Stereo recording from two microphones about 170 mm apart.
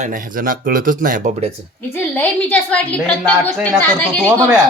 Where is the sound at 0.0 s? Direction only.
55° right (ahead or behind).